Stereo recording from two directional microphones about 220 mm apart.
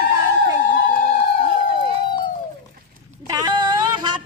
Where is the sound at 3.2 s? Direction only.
15° right (ahead or behind).